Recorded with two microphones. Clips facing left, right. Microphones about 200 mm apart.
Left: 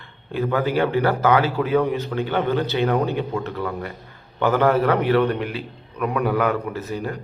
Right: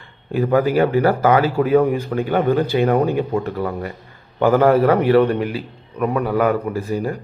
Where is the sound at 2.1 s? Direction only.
10° right (ahead or behind).